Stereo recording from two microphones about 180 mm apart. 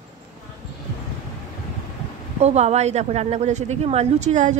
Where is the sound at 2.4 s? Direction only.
35° right (ahead or behind).